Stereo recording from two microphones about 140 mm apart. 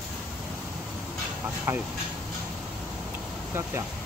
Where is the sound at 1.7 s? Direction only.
20° right (ahead or behind).